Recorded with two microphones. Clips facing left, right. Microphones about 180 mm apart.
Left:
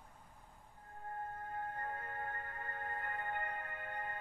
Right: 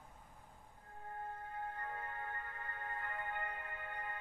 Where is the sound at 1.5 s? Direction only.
45° left (ahead or behind).